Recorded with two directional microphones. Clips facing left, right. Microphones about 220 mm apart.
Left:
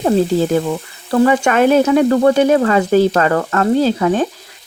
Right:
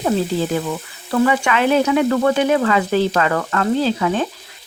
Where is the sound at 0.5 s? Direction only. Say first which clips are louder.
Left 5 dB; 40° left (ahead or behind).